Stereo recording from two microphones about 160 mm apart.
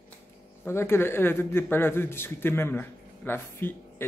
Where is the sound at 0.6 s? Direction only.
15° left (ahead or behind).